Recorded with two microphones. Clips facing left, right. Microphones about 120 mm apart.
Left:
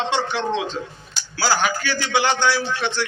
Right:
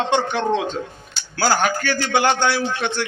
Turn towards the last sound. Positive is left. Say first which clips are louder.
# right 1 dB
turn(degrees=-50)  # may be behind; listen again after turning